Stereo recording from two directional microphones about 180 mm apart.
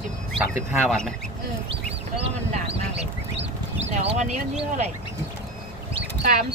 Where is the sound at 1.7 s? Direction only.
35° right (ahead or behind).